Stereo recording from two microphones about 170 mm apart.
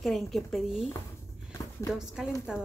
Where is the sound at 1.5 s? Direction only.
15° left (ahead or behind).